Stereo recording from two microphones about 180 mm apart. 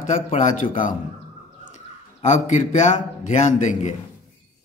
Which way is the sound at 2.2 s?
40° left (ahead or behind).